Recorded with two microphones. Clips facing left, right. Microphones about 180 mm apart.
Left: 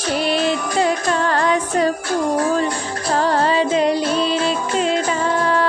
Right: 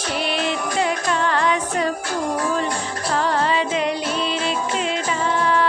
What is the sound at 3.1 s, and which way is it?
Music, 35° left (ahead or behind).